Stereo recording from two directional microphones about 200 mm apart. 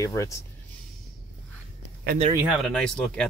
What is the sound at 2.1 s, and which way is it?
Speech, 50° right (ahead or behind).